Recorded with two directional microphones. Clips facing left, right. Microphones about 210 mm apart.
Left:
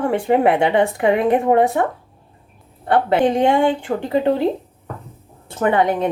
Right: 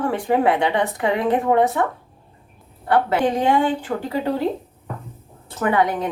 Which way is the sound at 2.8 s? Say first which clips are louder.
Left 3 dB; 25° left (ahead or behind).